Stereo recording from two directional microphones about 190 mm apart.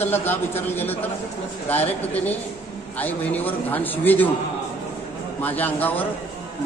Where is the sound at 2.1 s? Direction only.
10° left (ahead or behind).